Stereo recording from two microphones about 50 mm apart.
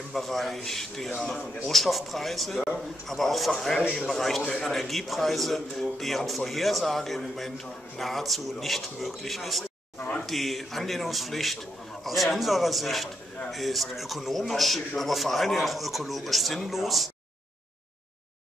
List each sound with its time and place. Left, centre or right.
0.1 s speech: centre